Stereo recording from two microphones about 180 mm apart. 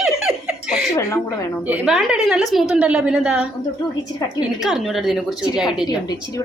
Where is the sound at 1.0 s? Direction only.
15° left (ahead or behind).